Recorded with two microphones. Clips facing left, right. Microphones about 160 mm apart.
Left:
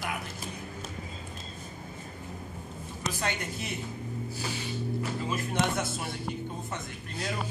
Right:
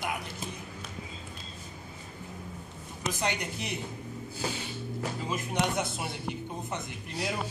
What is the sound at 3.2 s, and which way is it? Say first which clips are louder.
Speech: right 2 dB; 15° right (ahead or behind).